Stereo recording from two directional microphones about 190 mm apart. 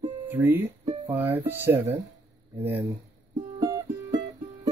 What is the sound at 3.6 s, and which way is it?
Music, 20° right (ahead or behind).